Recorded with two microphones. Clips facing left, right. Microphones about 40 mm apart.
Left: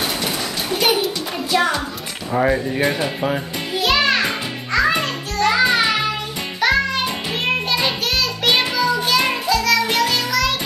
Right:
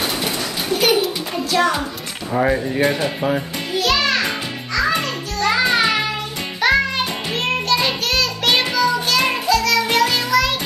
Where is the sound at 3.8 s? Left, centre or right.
Centre.